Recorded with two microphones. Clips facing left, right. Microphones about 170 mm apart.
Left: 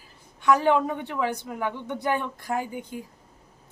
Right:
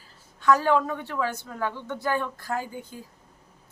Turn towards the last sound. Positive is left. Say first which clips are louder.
# left 3 dB
turn(degrees=20)  # may be behind; listen again after turning